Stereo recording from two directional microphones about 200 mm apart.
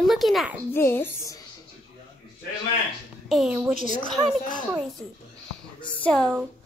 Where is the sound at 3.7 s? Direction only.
40° left (ahead or behind).